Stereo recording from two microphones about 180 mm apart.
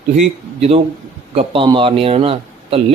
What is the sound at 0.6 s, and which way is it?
A man's voice, 35° right (ahead or behind).